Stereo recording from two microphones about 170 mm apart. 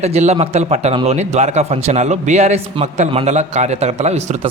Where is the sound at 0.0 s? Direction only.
40° right (ahead or behind).